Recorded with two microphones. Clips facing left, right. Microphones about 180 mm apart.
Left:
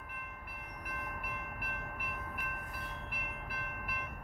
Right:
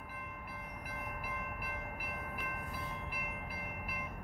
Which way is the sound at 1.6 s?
60° left (ahead or behind).